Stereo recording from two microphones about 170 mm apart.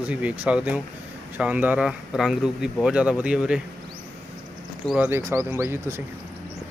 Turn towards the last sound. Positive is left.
turn(degrees=-15)  # may be behind; listen again after turning